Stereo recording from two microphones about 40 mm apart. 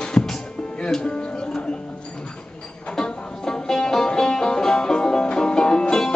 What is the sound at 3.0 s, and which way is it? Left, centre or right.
Music, centre.